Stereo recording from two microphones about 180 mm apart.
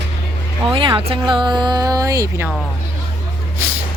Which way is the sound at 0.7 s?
25° right (ahead or behind).